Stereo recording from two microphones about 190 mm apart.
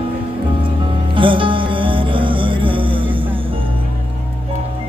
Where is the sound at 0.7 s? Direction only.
25° right (ahead or behind).